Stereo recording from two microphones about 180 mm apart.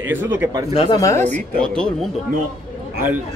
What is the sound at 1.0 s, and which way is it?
Speech, 15° left (ahead or behind).